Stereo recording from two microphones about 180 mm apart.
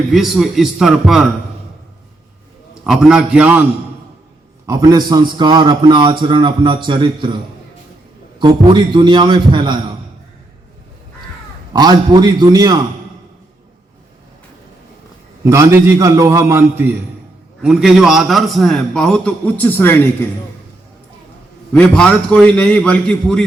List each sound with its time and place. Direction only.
0.1 s a man's voice: centre (ahead or behind)
2.8 s a man's voice: 5° right (ahead or behind)
4.6 s a man's voice: 20° right (ahead or behind)
8.4 s a man's voice: 25° right (ahead or behind)
11.7 s a man's voice: 25° right (ahead or behind)
15.4 s a man's voice: 15° right (ahead or behind)
17.6 s a man's voice: centre (ahead or behind)
21.7 s a man's voice: 5° left (ahead or behind)